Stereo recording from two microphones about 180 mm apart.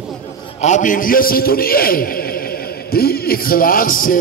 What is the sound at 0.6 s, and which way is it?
A man's voice, 40° left (ahead or behind).